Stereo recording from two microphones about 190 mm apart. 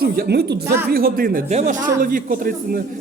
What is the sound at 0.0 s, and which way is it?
Speech, 55° right (ahead or behind).